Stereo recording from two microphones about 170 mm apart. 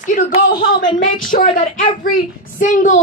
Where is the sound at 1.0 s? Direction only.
50° left (ahead or behind).